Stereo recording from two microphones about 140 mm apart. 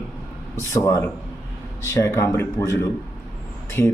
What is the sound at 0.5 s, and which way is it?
A man's voice, 20° left (ahead or behind).